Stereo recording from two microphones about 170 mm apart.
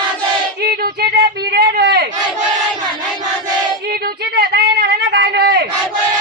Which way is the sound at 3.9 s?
65° right (ahead or behind).